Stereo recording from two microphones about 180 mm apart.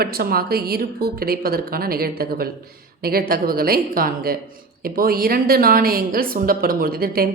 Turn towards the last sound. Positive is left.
turn(degrees=-55)  # may be behind; listen again after turning